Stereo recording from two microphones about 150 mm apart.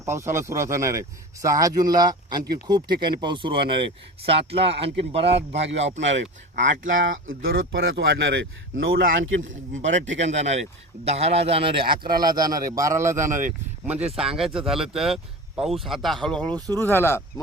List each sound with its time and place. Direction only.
0.0 s speech: 20° right (ahead or behind); by 5.9 s 45° right (ahead or behind)
6.6 s speech: 55° right (ahead or behind)
7.4 s speech: 90° right
8.7 s speech: 70° right (ahead or behind)
9.7 s speech: 55° right (ahead or behind); by 13.2 s 20° right (ahead or behind)
13.2 s speech: 60° right (ahead or behind)
13.8 s speech: 10° right (ahead or behind); by 17.4 s 15° left (ahead or behind)